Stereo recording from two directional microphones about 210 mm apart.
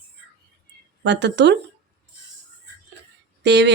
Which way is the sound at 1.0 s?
55° right (ahead or behind).